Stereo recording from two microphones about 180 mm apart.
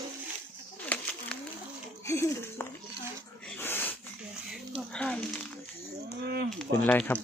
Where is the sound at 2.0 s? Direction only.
15° left (ahead or behind).